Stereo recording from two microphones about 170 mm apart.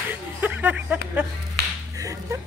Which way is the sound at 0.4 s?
10° right (ahead or behind).